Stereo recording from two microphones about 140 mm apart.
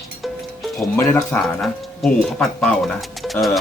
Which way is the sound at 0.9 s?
15° left (ahead or behind).